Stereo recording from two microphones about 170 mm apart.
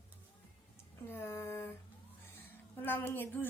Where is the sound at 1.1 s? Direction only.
15° left (ahead or behind).